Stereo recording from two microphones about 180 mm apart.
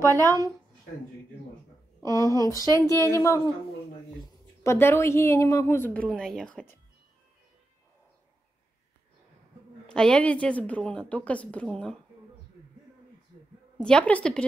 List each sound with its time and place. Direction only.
0.0 s a woman's voice: 15° right (ahead or behind)
2.0 s a woman's voice: 20° left (ahead or behind)
4.6 s a woman's voice: 15° left (ahead or behind)
6.0 s a woman's voice: centre (ahead or behind)
9.8 s a woman's voice: 5° left (ahead or behind)
13.7 s a woman's voice: 5° left (ahead or behind)